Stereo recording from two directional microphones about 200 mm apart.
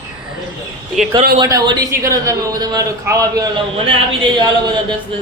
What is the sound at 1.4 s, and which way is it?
A man's voice, 20° right (ahead or behind).